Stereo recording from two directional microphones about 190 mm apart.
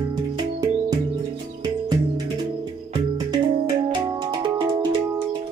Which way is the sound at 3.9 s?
25° right (ahead or behind).